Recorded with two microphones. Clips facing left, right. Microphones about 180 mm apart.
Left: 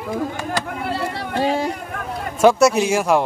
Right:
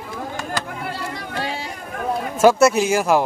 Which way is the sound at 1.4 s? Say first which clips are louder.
Left 10 dB; 45° left (ahead or behind).